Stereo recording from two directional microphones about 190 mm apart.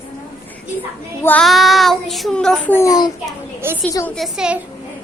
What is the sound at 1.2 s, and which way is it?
Child singing, 5° left (ahead or behind).